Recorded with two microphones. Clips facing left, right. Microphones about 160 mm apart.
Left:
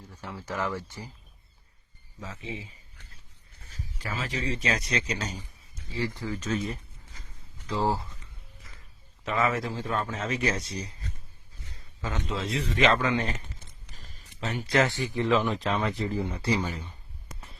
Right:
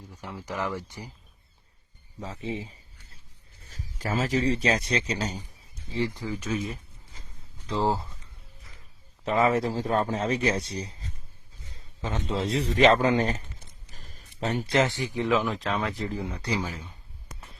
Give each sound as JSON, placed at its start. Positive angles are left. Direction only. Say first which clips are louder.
{"t": 0.1, "sound": "speech", "louder": "even", "side_deg": -15}
{"t": 2.2, "sound": "speech", "louder": "right 5 dB", "side_deg": -35}
{"t": 5.9, "sound": "speech", "louder": "right 2 dB", "side_deg": -20}
{"t": 7.7, "sound": "speech", "louder": "right 1 dB", "side_deg": -20}
{"t": 9.2, "sound": "speech", "louder": "right 4 dB", "side_deg": -35}
{"t": 12.3, "sound": "speech", "louder": "right 5 dB", "side_deg": -30}
{"t": 13.9, "sound": "a sound", "louder": "right 2 dB", "side_deg": -50}
{"t": 14.7, "sound": "speech", "louder": "left 1 dB", "side_deg": -20}
{"t": 15.3, "sound": "speech", "louder": "left 1 dB", "side_deg": 0}